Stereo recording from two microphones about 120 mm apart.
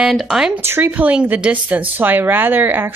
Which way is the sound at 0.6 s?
20° right (ahead or behind).